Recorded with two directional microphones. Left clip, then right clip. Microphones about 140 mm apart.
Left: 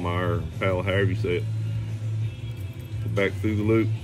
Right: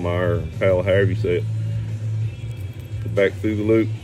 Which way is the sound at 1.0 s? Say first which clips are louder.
Right 5 dB; 40° right (ahead or behind).